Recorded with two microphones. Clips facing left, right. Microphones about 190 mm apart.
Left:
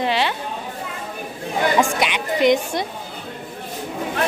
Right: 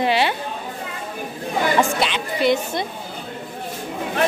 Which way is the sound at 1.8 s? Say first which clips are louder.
Even; 15° left (ahead or behind).